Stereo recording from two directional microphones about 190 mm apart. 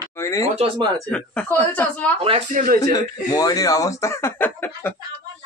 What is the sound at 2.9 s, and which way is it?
Speech, 20° left (ahead or behind).